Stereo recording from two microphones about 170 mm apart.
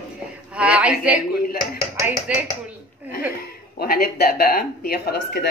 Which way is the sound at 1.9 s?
20° right (ahead or behind).